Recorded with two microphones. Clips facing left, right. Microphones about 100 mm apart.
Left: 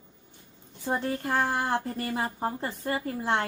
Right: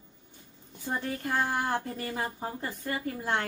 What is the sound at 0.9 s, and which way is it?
A woman's voice, 35° left (ahead or behind).